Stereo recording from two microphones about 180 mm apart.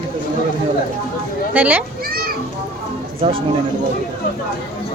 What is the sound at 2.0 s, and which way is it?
Children playing, 55° right (ahead or behind).